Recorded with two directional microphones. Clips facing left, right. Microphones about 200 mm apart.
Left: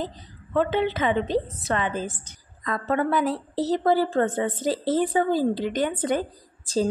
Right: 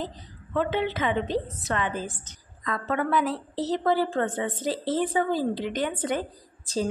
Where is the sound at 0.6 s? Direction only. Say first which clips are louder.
Left 3 dB; 35° left (ahead or behind).